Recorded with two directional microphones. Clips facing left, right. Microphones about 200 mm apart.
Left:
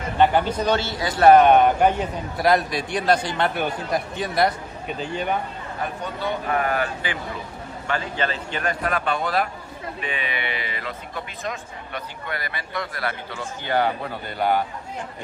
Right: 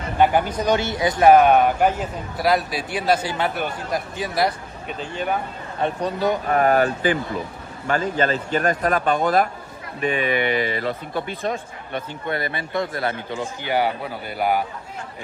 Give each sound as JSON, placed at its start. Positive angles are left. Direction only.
{"t": 0.2, "sound": "a man's voice", "side_deg": -10}
{"t": 1.3, "sound": "a man's voice", "side_deg": -5}
{"t": 5.8, "sound": "a man's voice", "side_deg": -40}